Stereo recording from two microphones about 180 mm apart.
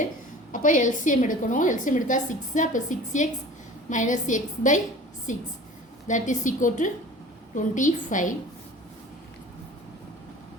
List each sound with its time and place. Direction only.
0.5 s a woman's voice: 45° left (ahead or behind)